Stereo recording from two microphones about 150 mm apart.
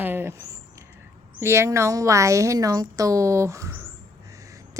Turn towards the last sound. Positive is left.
turn(degrees=-20)  # may be behind; listen again after turning